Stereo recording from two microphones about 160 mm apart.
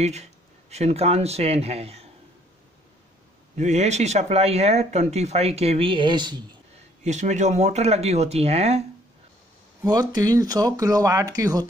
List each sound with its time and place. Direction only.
0.0 s speech: 45° right (ahead or behind)
3.5 s speech: 45° right (ahead or behind); by 6.4 s 30° right (ahead or behind)
7.0 s speech: 45° right (ahead or behind)
9.8 s speech: 25° right (ahead or behind)